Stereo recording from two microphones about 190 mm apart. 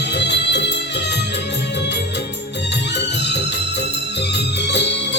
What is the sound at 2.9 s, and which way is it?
Music, 65° left (ahead or behind).